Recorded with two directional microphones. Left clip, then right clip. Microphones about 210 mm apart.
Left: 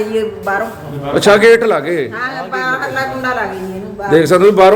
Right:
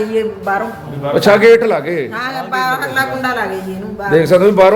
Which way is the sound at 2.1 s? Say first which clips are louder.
Right 1 dB; 45° right (ahead or behind).